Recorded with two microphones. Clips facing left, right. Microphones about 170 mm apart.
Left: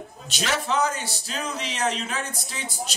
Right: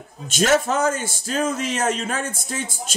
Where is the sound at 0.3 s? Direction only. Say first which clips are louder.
Right 8 dB; 45° right (ahead or behind).